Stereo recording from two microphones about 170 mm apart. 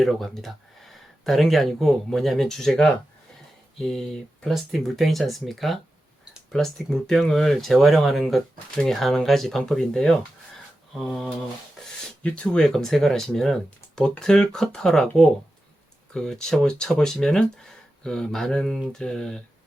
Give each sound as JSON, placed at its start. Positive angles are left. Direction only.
{"t": 0.0, "sound": "speech", "side_deg": 0}